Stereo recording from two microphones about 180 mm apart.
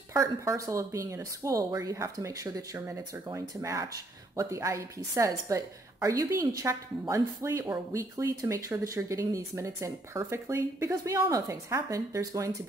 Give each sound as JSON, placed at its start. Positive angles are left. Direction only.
{"t": 0.1, "sound": "a woman's voice", "side_deg": -20}